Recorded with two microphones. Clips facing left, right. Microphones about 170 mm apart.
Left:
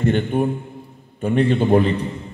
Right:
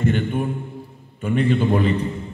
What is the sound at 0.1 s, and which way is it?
A man's voice, 40° left (ahead or behind).